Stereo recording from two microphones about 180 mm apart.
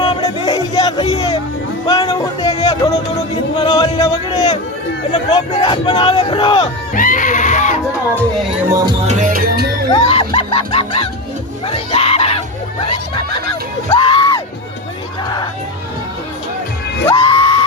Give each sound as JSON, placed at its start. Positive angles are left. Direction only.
{"t": 0.0, "sound": "music", "side_deg": 20}
{"t": 3.6, "sound": "battle cry", "side_deg": 20}
{"t": 5.5, "sound": "battle cry", "side_deg": 25}
{"t": 6.9, "sound": "a sound", "side_deg": 50}
{"t": 8.7, "sound": "music", "side_deg": -25}
{"t": 9.0, "sound": "music", "side_deg": -45}
{"t": 9.9, "sound": "speech", "side_deg": 30}
{"t": 11.7, "sound": "screaming", "side_deg": 35}
{"t": 12.8, "sound": "speech", "side_deg": 30}
{"t": 13.9, "sound": "music", "side_deg": 30}
{"t": 17.2, "sound": "a sound", "side_deg": 30}